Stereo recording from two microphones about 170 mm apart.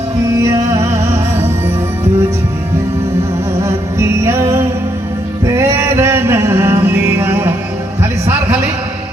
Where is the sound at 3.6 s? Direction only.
15° right (ahead or behind).